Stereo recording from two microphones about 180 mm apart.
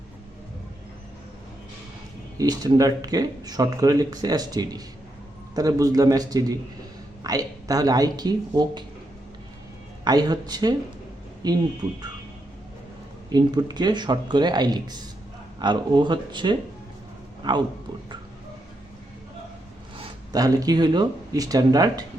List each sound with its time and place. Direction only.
2.4 s speech: 20° right (ahead or behind)
10.0 s speech: 20° right (ahead or behind)
13.3 s speech: 25° right (ahead or behind)
20.3 s speech: 20° right (ahead or behind)